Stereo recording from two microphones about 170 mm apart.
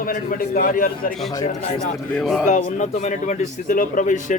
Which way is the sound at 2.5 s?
45° left (ahead or behind).